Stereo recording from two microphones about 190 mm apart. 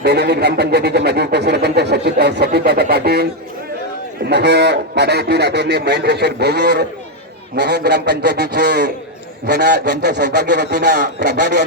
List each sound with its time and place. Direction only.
0.0 s speech: 60° right (ahead or behind)
4.3 s speech: 60° right (ahead or behind)